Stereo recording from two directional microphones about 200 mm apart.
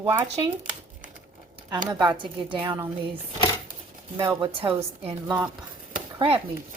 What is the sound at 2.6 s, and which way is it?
Speech, 20° right (ahead or behind).